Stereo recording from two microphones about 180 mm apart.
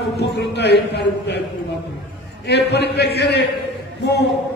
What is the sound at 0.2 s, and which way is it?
A man's voice, 70° left (ahead or behind).